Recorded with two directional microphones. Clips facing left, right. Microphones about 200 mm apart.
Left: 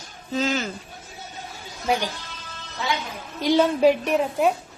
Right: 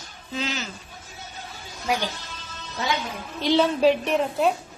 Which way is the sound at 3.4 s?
10° left (ahead or behind).